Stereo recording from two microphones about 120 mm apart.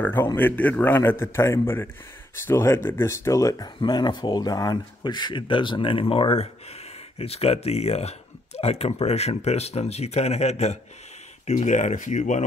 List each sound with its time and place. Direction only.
0.0 s a man's voice: 20° left (ahead or behind); by 12.4 s 80° left